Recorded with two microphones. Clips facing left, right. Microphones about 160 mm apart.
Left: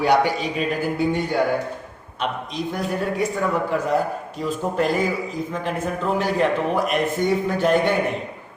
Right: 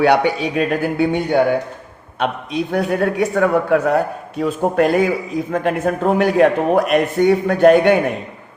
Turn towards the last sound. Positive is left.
turn(degrees=-65)  # may be behind; listen again after turning